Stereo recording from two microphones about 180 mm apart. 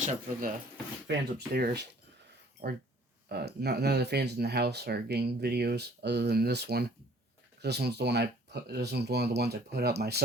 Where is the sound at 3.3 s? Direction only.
65° right (ahead or behind).